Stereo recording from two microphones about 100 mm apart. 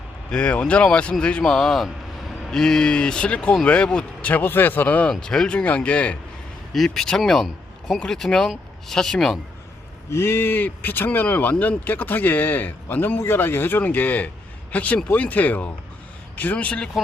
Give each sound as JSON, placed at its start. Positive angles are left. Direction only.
{"t": 0.3, "sound": "speech", "side_deg": 10}
{"t": 5.1, "sound": "speech", "side_deg": 5}
{"t": 10.1, "sound": "speech", "side_deg": 25}